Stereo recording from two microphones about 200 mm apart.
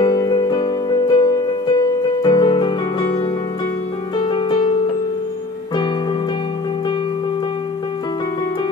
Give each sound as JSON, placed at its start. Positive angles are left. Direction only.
{"t": 0.0, "sound": "music", "side_deg": 20}
{"t": 4.2, "sound": "music", "side_deg": 25}